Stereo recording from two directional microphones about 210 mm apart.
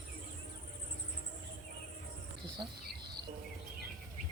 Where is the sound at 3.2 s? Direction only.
20° right (ahead or behind).